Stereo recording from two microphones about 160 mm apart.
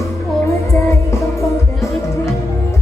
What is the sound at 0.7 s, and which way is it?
Music, 15° left (ahead or behind).